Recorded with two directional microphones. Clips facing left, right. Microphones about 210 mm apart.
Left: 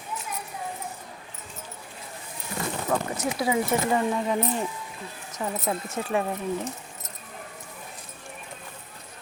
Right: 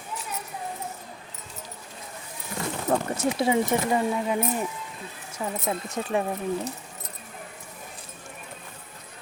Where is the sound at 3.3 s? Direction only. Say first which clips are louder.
Right 1 dB; 25° right (ahead or behind).